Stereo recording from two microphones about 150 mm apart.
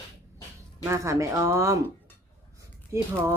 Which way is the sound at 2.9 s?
20° right (ahead or behind).